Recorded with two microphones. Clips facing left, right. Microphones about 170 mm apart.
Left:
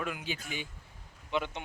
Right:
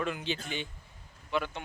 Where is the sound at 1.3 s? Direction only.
20° left (ahead or behind).